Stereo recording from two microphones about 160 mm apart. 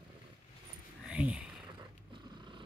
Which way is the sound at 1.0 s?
5° right (ahead or behind).